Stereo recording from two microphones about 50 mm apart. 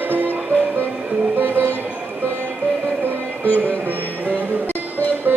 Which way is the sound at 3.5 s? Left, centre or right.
Right.